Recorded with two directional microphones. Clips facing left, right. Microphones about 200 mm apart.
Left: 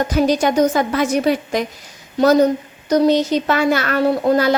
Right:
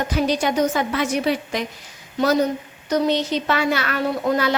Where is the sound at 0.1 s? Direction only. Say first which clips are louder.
Left 4 dB; 45° left (ahead or behind).